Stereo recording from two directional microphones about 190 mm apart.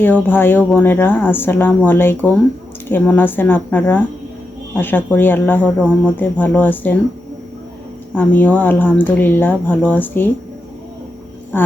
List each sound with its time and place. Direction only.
0.0 s speech: 10° left (ahead or behind)
8.1 s speech: 10° left (ahead or behind)
11.5 s speech: 10° left (ahead or behind)